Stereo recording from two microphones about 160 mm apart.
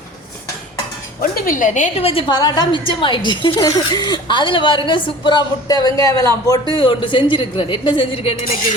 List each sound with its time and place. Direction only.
1.5 s a woman's voice: 55° left (ahead or behind)
2.0 s a woman's voice: 30° left (ahead or behind)
6.7 s a woman's voice: 30° left (ahead or behind)